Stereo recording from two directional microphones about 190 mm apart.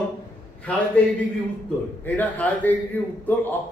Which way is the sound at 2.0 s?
10° left (ahead or behind).